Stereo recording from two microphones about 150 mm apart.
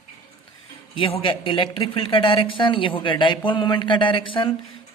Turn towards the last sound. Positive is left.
turn(degrees=35)  # may be behind; listen again after turning